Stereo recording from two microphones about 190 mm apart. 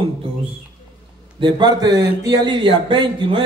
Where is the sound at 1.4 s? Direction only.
25° right (ahead or behind).